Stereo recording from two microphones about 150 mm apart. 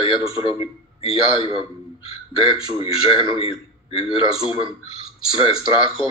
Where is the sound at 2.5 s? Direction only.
35° left (ahead or behind).